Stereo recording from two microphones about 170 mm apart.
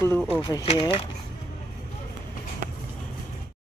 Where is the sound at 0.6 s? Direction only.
35° left (ahead or behind).